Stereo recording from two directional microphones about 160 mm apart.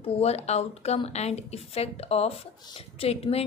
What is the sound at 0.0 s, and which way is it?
A woman's voice, 40° left (ahead or behind).